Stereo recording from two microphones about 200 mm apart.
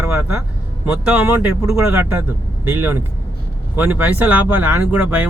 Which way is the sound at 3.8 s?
10° right (ahead or behind).